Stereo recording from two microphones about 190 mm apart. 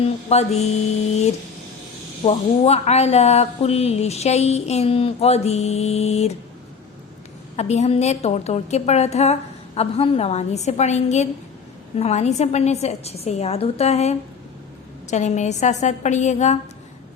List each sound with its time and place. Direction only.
0.3 s speech: 35° left (ahead or behind)
2.2 s speech: 35° left (ahead or behind)
7.5 s speech: 35° left (ahead or behind)